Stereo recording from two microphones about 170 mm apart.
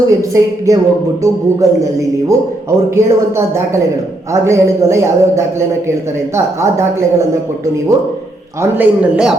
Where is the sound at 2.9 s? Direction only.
15° right (ahead or behind).